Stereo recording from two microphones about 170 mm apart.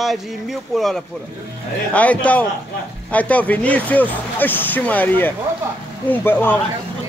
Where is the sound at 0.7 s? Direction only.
Centre (ahead or behind).